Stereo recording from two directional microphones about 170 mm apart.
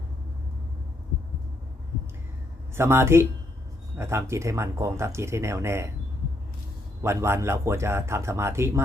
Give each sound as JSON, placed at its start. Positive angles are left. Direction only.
{"t": 2.7, "sound": "speech", "side_deg": -15}
{"t": 7.0, "sound": "speech", "side_deg": -15}